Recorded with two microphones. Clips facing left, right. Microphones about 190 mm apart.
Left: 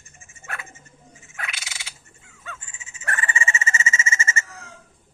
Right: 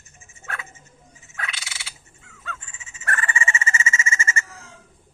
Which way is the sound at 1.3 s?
10° left (ahead or behind).